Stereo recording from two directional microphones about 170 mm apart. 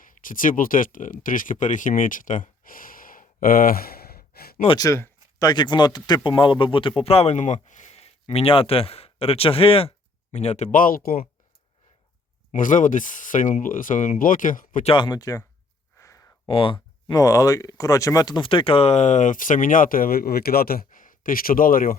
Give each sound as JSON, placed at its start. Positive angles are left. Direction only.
{"t": 0.0, "sound": "speech", "side_deg": 50}
{"t": 4.8, "sound": "speech", "side_deg": 15}
{"t": 12.5, "sound": "speech", "side_deg": 50}
{"t": 14.8, "sound": "speech", "side_deg": 25}
{"t": 16.0, "sound": "a sound", "side_deg": 15}
{"t": 16.5, "sound": "speech", "side_deg": 30}